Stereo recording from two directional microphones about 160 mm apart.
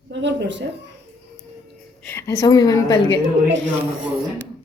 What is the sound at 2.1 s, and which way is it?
A woman's voice, 15° left (ahead or behind).